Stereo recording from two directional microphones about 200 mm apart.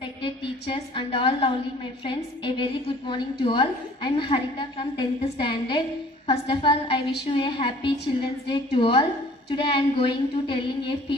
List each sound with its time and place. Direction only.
0.2 s a woman's voice: 25° left (ahead or behind)